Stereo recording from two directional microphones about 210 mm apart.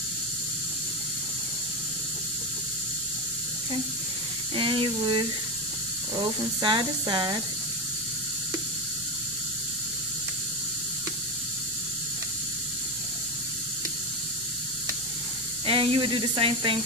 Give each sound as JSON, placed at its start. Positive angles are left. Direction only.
{"t": 4.6, "sound": "speech", "side_deg": -25}
{"t": 6.6, "sound": "speech", "side_deg": -20}
{"t": 15.6, "sound": "speech", "side_deg": -25}